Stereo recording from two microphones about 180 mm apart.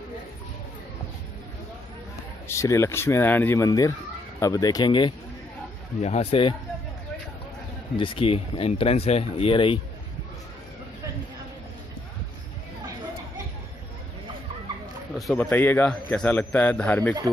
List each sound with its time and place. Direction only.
2.4 s a man's voice: 15° left (ahead or behind); by 6.5 s 35° left (ahead or behind)
7.9 s speech: 30° left (ahead or behind)
15.1 s a man's voice: 5° left (ahead or behind)